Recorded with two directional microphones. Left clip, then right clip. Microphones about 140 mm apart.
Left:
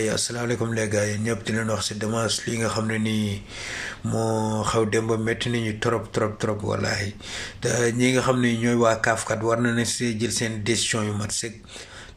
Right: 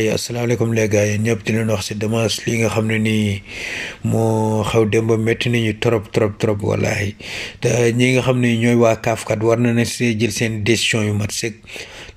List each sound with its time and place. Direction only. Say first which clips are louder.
0.0 s speech: right 6 dB; 20° right (ahead or behind)